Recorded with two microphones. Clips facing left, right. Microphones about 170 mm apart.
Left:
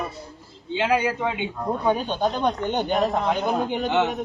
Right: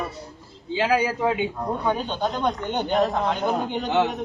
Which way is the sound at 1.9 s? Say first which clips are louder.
Left 3 dB; 15° left (ahead or behind).